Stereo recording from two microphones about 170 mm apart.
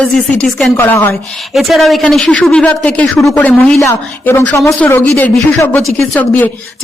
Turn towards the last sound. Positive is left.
turn(degrees=10)  # may be behind; listen again after turning